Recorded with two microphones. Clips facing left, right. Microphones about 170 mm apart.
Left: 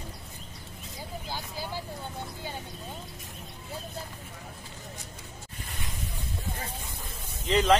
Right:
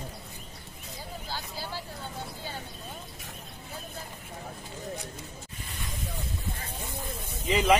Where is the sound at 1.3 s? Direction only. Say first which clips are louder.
Left 1 dB; 15° left (ahead or behind).